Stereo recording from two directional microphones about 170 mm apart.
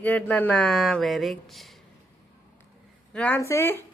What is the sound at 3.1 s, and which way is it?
Speech, 10° left (ahead or behind).